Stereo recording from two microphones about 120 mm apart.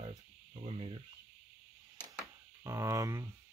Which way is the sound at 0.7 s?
50° right (ahead or behind).